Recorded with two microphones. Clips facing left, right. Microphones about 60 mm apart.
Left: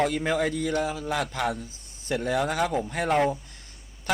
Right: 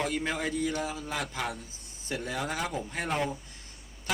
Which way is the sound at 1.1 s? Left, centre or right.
Left.